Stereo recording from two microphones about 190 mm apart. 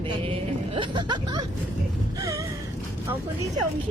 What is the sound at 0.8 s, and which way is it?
Speech, 25° right (ahead or behind).